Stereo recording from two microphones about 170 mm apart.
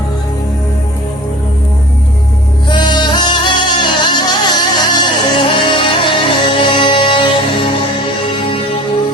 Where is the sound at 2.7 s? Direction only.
25° left (ahead or behind).